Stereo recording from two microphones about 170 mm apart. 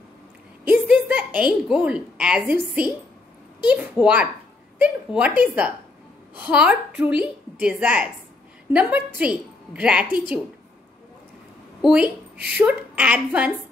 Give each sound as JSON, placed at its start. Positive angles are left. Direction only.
{"t": 0.7, "sound": "a woman's voice", "side_deg": -10}
{"t": 11.8, "sound": "a woman's voice", "side_deg": -5}